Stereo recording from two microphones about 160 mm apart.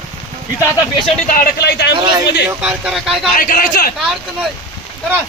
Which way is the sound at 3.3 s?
60° left (ahead or behind).